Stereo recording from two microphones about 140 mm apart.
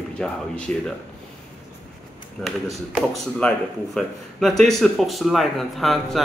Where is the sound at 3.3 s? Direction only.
5° left (ahead or behind).